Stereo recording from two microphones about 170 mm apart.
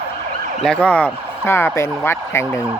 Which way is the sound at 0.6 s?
5° left (ahead or behind).